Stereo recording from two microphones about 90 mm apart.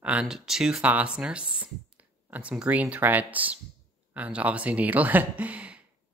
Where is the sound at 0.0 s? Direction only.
15° right (ahead or behind).